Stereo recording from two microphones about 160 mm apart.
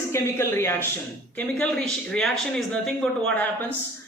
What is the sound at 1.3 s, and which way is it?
A man's voice, 5° left (ahead or behind).